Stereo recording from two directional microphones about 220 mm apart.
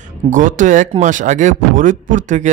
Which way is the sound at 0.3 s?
35° right (ahead or behind).